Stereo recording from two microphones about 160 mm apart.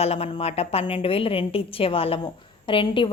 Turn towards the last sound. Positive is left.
turn(degrees=30)  # may be behind; listen again after turning